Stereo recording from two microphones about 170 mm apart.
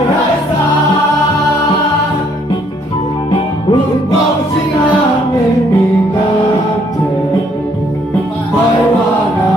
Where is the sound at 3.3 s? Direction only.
25° left (ahead or behind).